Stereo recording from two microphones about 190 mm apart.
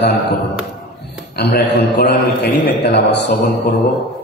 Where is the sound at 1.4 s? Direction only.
60° left (ahead or behind).